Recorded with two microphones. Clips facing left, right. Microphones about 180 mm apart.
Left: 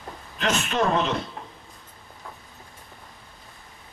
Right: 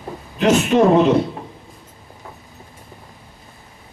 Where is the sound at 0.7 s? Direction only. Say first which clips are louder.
Right 10 dB; 30° right (ahead or behind).